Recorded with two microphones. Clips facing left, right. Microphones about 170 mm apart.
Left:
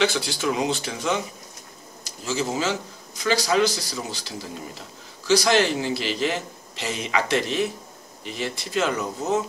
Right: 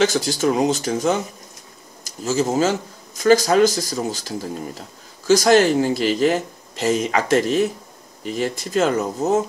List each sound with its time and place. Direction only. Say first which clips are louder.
0.0 s speech: right 5 dB; 45° right (ahead or behind)